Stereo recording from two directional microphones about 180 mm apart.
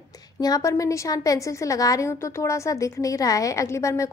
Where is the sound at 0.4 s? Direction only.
20° left (ahead or behind).